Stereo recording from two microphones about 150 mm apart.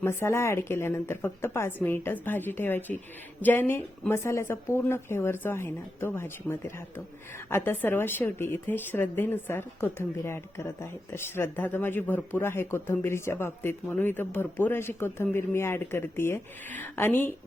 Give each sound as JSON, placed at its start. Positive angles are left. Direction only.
{"t": 0.0, "sound": "a woman's voice", "side_deg": 15}